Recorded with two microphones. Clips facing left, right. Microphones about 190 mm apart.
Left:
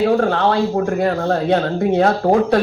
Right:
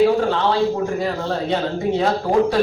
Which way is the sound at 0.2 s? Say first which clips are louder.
Left 2 dB; 55° left (ahead or behind).